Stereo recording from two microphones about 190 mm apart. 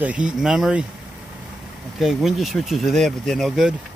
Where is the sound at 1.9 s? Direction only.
Centre (ahead or behind).